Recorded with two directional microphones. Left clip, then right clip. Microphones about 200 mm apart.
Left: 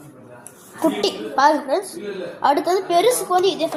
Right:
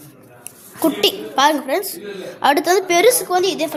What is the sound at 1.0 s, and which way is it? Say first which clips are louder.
Speech: right 2 dB; 70° right (ahead or behind).